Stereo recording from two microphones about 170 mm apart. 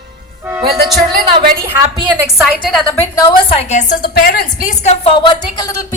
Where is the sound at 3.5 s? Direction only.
40° left (ahead or behind).